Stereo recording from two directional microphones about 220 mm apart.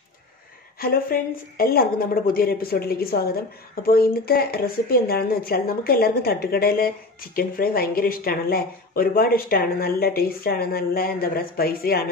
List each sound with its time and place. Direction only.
0.7 s speech: 40° left (ahead or behind)